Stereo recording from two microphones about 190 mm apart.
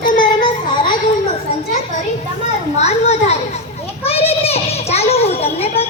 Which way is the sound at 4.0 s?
30° left (ahead or behind).